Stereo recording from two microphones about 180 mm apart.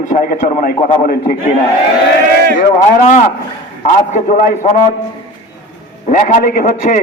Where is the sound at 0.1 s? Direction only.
45° left (ahead or behind).